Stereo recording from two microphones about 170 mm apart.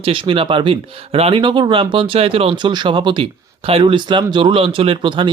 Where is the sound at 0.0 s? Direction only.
30° right (ahead or behind).